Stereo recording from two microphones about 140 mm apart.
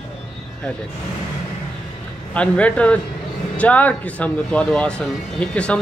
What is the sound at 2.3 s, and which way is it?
Speech, 10° left (ahead or behind).